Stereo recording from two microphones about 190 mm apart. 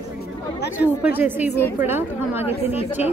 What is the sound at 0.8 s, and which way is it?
Speech, 10° right (ahead or behind).